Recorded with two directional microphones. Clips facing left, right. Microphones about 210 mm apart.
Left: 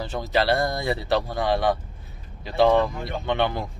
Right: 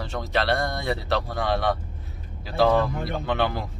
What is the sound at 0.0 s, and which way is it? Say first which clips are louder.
Speech: left 3 dB; centre (ahead or behind).